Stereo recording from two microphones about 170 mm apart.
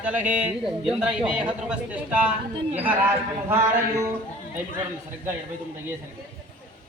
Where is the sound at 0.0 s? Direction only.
10° right (ahead or behind).